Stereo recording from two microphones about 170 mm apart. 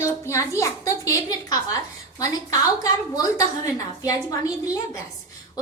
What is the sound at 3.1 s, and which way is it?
A woman's voice, 20° left (ahead or behind).